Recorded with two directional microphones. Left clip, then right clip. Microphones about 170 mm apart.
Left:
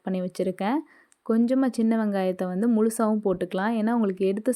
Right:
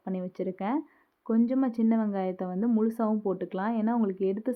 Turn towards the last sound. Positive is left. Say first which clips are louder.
# left 5 dB
turn(degrees=30)  # may be behind; listen again after turning